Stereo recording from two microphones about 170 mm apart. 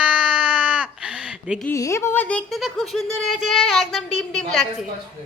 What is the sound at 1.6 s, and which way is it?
A woman's voice, 15° left (ahead or behind).